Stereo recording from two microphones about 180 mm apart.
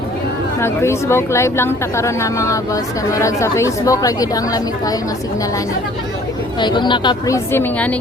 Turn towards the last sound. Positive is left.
turn(degrees=10)  # may be behind; listen again after turning